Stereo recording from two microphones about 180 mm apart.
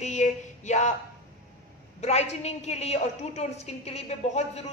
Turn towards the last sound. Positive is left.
turn(degrees=35)  # may be behind; listen again after turning